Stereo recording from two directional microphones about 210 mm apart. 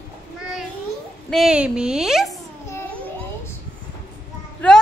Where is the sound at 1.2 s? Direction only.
Centre (ahead or behind).